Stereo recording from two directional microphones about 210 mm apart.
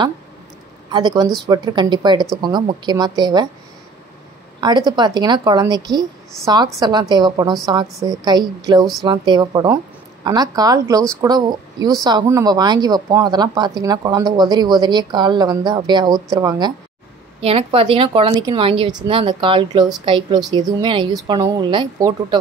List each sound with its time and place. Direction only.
0.9 s speech: 20° right (ahead or behind)
4.6 s speech: 20° right (ahead or behind)